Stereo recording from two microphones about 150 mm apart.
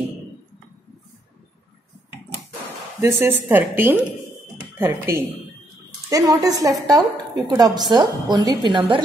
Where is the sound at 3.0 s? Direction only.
15° right (ahead or behind).